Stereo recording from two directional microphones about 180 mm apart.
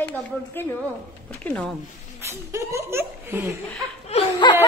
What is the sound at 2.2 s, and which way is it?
Speech, 15° right (ahead or behind).